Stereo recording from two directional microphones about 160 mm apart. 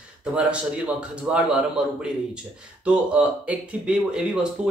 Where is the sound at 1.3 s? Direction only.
5° right (ahead or behind).